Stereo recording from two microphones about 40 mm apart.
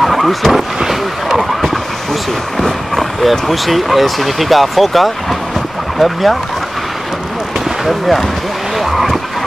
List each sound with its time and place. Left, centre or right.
0.0 s speech: centre
0.7 s vehicle: centre
2.6 s speech: centre
7.8 s speech: centre
8.7 s vehicle: centre